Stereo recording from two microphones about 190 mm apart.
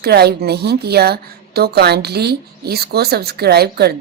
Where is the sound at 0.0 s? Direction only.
60° right (ahead or behind).